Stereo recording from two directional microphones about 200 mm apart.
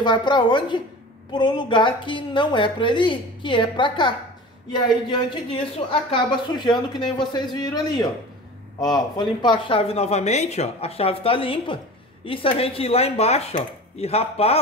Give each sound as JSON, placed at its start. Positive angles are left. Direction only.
{"t": 0.0, "sound": "speech", "side_deg": 20}